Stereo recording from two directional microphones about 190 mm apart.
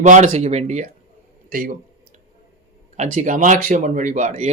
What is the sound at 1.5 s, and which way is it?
Speech, 50° right (ahead or behind).